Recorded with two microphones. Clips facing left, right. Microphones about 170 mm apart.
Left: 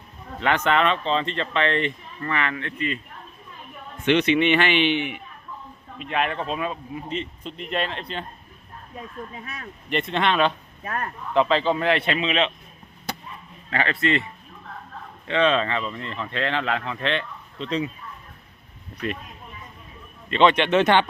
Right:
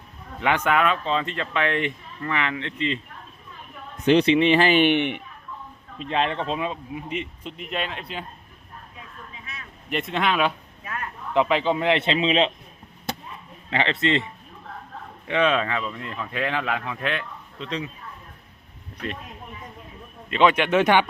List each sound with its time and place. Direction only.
0.4 s speech: 10° right (ahead or behind)
4.0 s speech: 35° right (ahead or behind)
4.8 s a man's voice: 55° right (ahead or behind)
6.0 s speech: 25° right (ahead or behind); by 8.2 s 5° right (ahead or behind)
9.0 s speech: 45° left (ahead or behind)
9.9 s speech: centre (ahead or behind)
10.8 s speech: 45° left (ahead or behind)
11.3 s a man's voice: 15° right (ahead or behind)
13.7 s a man's voice: 20° right (ahead or behind)
15.3 s speech: 10° right (ahead or behind)
20.3 s speech: 5° right (ahead or behind)